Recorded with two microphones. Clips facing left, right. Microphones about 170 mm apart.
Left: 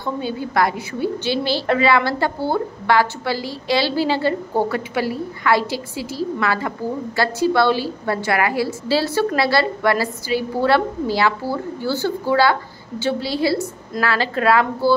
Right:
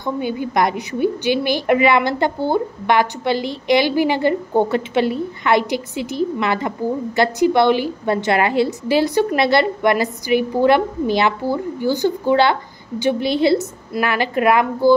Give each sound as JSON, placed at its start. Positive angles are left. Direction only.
{"t": 0.0, "sound": "a woman's voice", "side_deg": -15}